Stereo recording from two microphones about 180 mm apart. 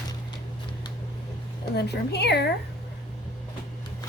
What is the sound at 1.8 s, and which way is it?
Speech, 65° left (ahead or behind).